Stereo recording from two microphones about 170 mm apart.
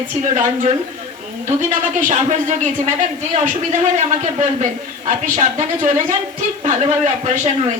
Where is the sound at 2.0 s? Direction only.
45° right (ahead or behind).